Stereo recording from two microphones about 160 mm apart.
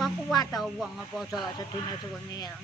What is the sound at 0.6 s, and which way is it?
Speech, centre (ahead or behind).